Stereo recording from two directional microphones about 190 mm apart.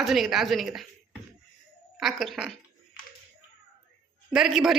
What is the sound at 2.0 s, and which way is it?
Speech, centre (ahead or behind).